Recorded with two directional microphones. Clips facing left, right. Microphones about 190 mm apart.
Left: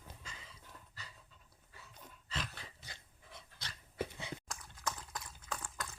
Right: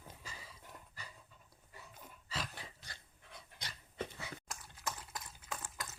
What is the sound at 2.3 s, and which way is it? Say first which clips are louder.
Dog: even; 10° right (ahead or behind).